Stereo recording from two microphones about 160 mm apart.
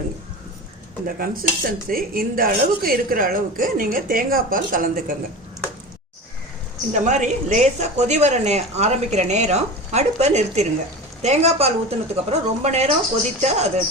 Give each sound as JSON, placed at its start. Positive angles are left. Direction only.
{"t": 1.2, "sound": "speech", "side_deg": -65}
{"t": 6.9, "sound": "a woman's voice", "side_deg": -50}